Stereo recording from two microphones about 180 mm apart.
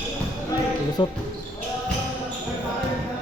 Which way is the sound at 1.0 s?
25° left (ahead or behind).